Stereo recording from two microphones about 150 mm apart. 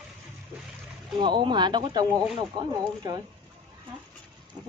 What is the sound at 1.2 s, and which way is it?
Speech, 30° right (ahead or behind).